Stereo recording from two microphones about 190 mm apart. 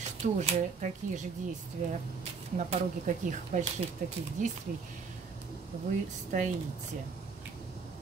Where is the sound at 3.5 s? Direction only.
40° right (ahead or behind).